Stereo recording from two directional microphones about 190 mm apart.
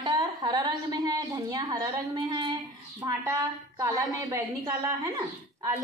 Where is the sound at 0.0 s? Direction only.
20° right (ahead or behind).